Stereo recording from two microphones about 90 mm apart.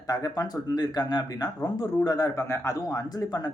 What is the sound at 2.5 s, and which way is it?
Speech, 35° left (ahead or behind).